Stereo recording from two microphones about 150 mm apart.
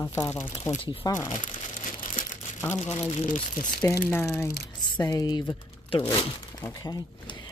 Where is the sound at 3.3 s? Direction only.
60° left (ahead or behind).